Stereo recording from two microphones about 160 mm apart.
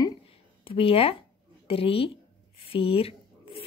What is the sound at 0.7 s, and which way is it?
A woman's voice, 35° left (ahead or behind).